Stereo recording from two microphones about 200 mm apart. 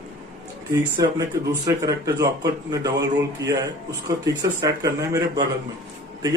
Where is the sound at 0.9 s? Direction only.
15° right (ahead or behind).